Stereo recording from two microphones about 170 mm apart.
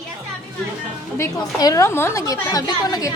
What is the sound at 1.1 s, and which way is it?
A woman's voice, 20° left (ahead or behind).